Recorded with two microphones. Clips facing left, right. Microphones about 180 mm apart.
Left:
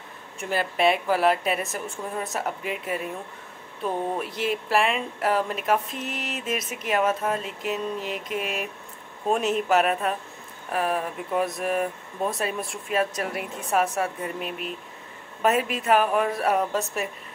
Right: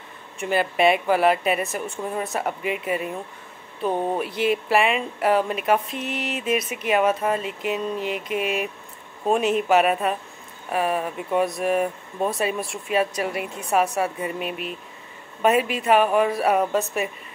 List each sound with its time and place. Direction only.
0.4 s speech: centre (ahead or behind)
4.2 s speech: centre (ahead or behind)